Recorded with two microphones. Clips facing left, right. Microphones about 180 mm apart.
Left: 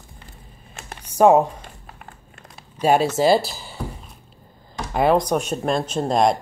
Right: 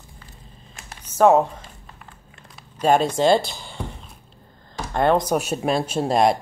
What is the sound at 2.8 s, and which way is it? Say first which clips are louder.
Speech: even; 10° left (ahead or behind).